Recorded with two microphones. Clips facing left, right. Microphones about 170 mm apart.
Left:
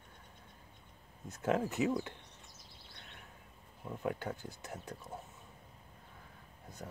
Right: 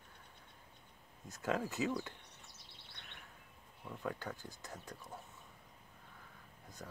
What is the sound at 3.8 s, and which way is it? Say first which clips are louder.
Speech: left 5 dB; 20° left (ahead or behind).